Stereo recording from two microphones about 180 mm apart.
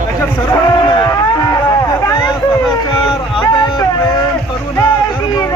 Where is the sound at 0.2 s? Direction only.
20° left (ahead or behind).